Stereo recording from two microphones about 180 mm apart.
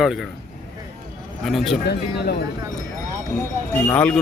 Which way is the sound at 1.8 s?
65° left (ahead or behind).